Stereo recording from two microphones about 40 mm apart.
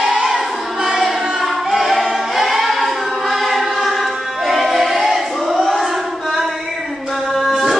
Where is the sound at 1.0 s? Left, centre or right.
Centre.